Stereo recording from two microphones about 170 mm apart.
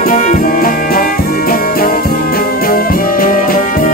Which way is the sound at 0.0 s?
55° left (ahead or behind).